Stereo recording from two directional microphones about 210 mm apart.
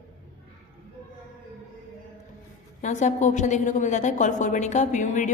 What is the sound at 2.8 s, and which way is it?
A woman's voice, 35° left (ahead or behind).